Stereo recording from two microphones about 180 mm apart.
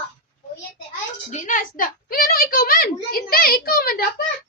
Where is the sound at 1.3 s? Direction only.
45° left (ahead or behind).